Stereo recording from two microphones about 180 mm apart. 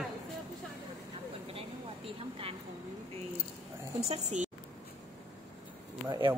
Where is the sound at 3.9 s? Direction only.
35° right (ahead or behind).